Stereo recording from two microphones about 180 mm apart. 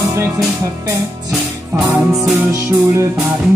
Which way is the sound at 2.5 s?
15° right (ahead or behind).